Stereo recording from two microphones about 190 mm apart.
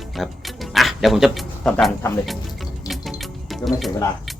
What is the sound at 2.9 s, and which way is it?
Music, centre (ahead or behind).